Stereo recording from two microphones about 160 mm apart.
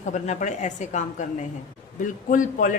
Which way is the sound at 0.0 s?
50° left (ahead or behind).